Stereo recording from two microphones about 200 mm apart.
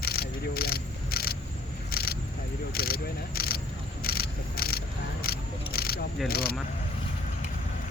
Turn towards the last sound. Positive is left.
turn(degrees=50)  # may be behind; listen again after turning